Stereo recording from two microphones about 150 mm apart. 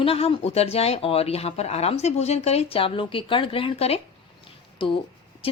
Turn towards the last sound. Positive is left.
turn(degrees=40)  # may be behind; listen again after turning